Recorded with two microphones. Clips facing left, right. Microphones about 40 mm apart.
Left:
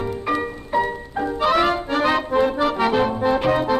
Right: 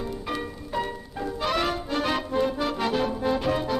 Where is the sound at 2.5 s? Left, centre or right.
Left.